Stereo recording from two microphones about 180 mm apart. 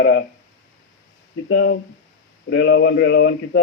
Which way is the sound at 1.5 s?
80° left.